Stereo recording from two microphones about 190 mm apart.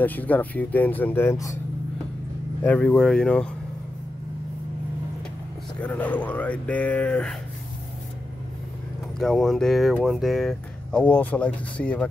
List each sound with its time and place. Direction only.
0.0 s speech: 10° left (ahead or behind)
2.6 s speech: 5° left (ahead or behind)
5.8 s speech: 10° left (ahead or behind)
9.2 s speech: centre (ahead or behind)